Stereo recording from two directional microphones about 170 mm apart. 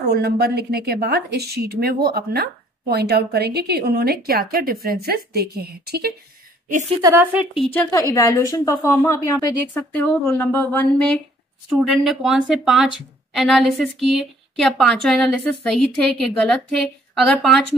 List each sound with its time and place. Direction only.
0.0 s a woman's voice: 70° right (ahead or behind)
7.0 s speech: 20° right (ahead or behind)
8.1 s a woman's voice: 20° left (ahead or behind); by 17.6 s 5° left (ahead or behind)